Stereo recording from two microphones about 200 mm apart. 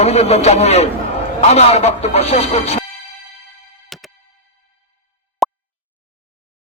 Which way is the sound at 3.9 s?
Centre (ahead or behind).